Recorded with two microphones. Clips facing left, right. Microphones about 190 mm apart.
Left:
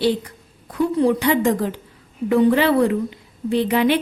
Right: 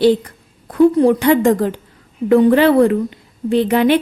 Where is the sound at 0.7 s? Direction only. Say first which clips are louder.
Right 7 dB; 50° right (ahead or behind).